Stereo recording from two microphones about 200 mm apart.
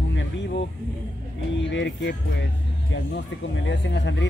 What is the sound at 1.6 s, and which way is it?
Speech, 65° left (ahead or behind).